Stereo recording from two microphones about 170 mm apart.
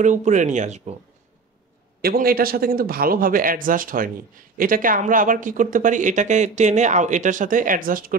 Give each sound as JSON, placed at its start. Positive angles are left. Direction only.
{"t": 0.0, "sound": "speech", "side_deg": -45}
{"t": 2.0, "sound": "a man's voice", "side_deg": -60}